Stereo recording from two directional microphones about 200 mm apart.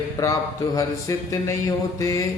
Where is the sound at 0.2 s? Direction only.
15° left (ahead or behind).